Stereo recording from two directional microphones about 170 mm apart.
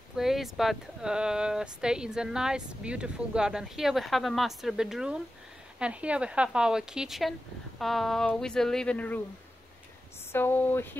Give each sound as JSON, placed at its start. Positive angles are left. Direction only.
{"t": 0.1, "sound": "speech", "side_deg": 0}
{"t": 10.3, "sound": "speech", "side_deg": 10}